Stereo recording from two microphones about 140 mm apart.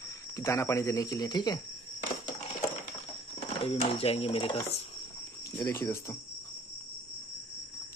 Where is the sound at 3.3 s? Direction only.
45° left (ahead or behind).